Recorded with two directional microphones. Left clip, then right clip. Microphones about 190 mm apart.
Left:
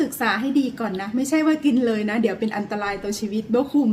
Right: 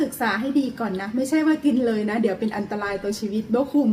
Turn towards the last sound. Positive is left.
turn(degrees=15)  # may be behind; listen again after turning